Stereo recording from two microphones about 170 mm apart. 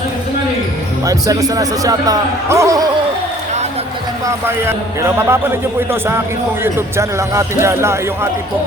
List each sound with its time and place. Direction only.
1.0 s a man's voice: 20° right (ahead or behind)
4.3 s a man's voice: 15° right (ahead or behind)
6.6 s a man's voice: 15° right (ahead or behind)